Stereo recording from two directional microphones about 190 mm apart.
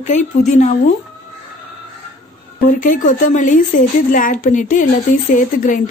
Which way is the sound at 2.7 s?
45° left (ahead or behind).